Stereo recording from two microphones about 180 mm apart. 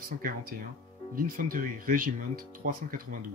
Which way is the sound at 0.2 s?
50° right (ahead or behind).